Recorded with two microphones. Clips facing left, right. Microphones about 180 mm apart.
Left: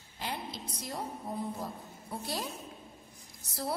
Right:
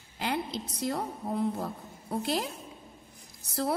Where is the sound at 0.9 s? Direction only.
65° right (ahead or behind).